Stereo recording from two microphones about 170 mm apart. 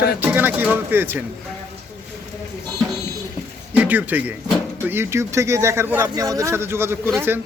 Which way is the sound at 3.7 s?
10° right (ahead or behind).